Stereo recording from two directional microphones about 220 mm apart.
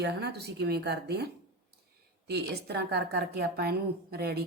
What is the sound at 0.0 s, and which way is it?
A woman's voice, 50° right (ahead or behind).